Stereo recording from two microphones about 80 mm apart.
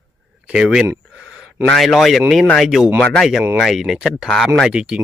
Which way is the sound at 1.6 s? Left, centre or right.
Centre.